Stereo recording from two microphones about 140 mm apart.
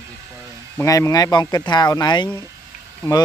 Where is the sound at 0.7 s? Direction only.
20° left (ahead or behind).